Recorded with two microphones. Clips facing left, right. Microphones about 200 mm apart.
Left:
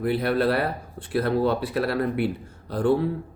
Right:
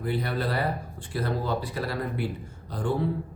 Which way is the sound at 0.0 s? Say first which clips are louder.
Left 7 dB; 65° left (ahead or behind).